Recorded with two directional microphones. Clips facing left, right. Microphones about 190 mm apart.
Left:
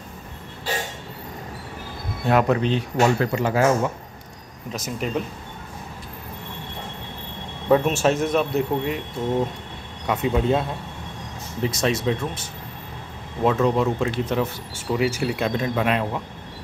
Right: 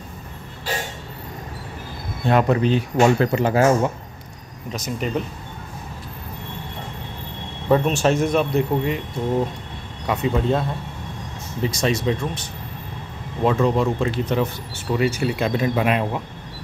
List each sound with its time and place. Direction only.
2.2 s speech: centre (ahead or behind)
3.0 s speech: 30° right (ahead or behind)
4.7 s speech: centre (ahead or behind)
7.6 s speech: 5° left (ahead or behind)
11.6 s speech: centre (ahead or behind)